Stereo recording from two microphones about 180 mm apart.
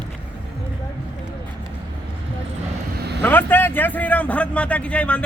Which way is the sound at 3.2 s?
10° left (ahead or behind).